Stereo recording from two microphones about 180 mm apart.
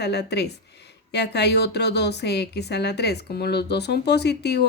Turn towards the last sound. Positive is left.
turn(degrees=70)  # may be behind; listen again after turning